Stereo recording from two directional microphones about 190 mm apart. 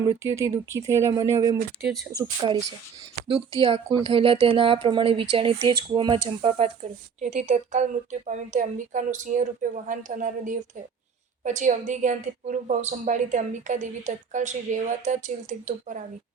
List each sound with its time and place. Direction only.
0.0 s speech: 15° right (ahead or behind)
7.2 s a woman's voice: 40° right (ahead or behind)